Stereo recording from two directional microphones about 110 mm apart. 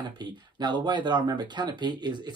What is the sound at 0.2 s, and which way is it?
Speech, 40° right (ahead or behind).